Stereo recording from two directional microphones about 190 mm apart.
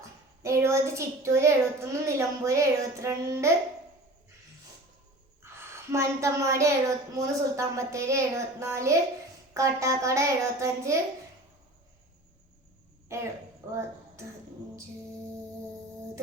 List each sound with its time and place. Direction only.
0.4 s a child's voice: 15° right (ahead or behind)
5.9 s a child's voice: 15° right (ahead or behind)
13.1 s a child's voice: 15° right (ahead or behind)